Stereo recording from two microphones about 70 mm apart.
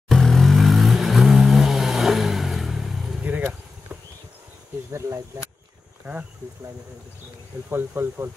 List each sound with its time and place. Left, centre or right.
0.1 s vehicle: centre
3.2 s vehicle: right
4.9 s a sound: right
7.7 s speech: right